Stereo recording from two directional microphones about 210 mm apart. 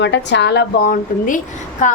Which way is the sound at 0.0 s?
55° left (ahead or behind).